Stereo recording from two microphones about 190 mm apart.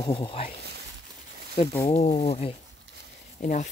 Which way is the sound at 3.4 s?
40° left (ahead or behind).